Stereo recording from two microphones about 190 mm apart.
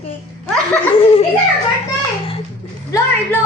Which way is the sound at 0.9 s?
30° left (ahead or behind).